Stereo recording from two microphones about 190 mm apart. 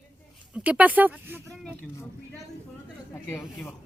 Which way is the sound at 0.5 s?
5° right (ahead or behind).